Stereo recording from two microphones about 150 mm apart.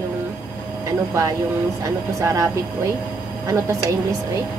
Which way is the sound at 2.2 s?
20° right (ahead or behind).